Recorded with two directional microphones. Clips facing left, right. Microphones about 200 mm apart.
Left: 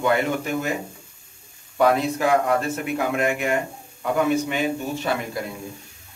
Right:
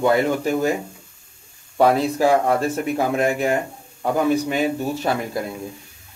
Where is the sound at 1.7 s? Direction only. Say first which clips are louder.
Right 2 dB; 35° right (ahead or behind).